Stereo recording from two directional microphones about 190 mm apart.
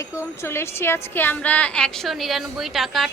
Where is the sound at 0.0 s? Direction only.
15° left (ahead or behind).